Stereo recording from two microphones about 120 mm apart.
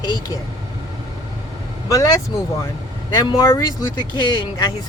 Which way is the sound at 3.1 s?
35° left (ahead or behind).